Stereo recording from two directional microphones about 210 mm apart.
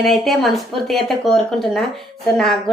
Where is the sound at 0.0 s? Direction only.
Centre (ahead or behind).